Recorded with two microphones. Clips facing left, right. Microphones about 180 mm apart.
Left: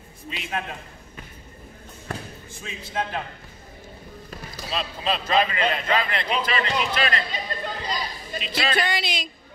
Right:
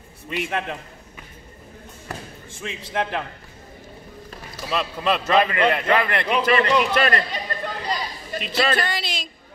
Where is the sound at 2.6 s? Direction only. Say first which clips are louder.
Right 3 dB; 70° right (ahead or behind).